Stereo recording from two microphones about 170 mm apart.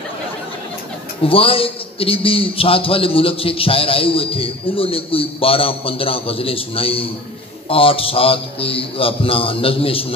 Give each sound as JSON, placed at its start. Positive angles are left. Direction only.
{"t": 1.2, "sound": "a man's voice", "side_deg": 35}